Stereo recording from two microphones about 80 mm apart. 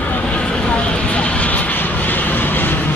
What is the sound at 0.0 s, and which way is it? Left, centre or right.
Vehicle, centre.